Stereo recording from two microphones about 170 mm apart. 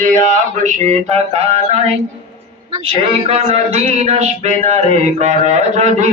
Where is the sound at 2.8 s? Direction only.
35° right (ahead or behind).